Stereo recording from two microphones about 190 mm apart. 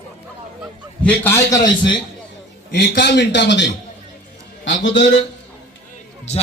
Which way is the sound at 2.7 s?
60° left (ahead or behind).